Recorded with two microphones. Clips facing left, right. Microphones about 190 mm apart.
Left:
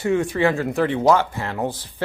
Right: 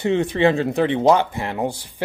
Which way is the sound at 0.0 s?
20° right (ahead or behind).